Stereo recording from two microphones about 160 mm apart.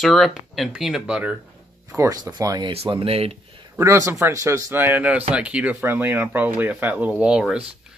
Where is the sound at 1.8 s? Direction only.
20° right (ahead or behind).